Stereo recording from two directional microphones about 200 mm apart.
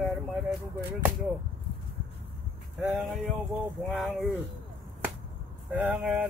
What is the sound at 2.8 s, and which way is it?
Speech, centre (ahead or behind).